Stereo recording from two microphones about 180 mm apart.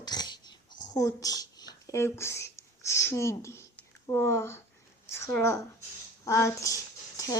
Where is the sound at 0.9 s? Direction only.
20° left (ahead or behind).